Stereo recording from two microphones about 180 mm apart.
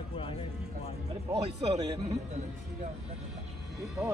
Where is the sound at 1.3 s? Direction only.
35° right (ahead or behind).